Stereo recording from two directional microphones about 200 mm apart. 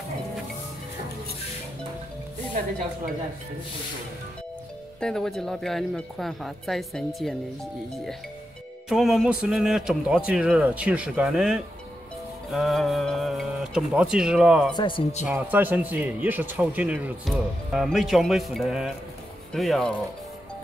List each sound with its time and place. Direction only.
5.0 s a man's voice: centre (ahead or behind)
8.8 s a man's voice: centre (ahead or behind)
14.8 s speech: 25° left (ahead or behind)
15.2 s a man's voice: 10° right (ahead or behind)